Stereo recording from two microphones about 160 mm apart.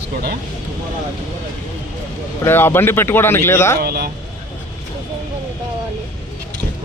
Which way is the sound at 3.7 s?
70° right (ahead or behind).